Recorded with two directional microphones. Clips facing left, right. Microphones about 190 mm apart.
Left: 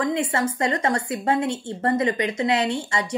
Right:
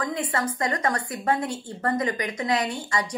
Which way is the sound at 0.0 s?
25° left (ahead or behind).